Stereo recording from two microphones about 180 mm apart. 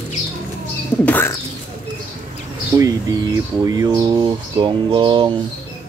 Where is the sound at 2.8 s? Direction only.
20° right (ahead or behind).